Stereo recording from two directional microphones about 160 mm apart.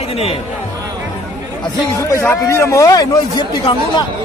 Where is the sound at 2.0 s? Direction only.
15° left (ahead or behind).